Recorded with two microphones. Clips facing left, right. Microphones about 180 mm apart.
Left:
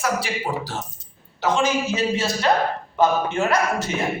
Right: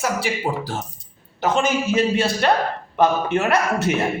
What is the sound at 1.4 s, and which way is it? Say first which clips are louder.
A man's voice: right 1 dB; 55° right (ahead or behind).